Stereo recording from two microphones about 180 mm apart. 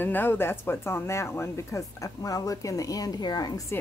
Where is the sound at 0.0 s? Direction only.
10° left (ahead or behind).